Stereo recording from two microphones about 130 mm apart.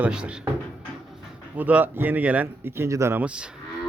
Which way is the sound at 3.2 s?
5° right (ahead or behind).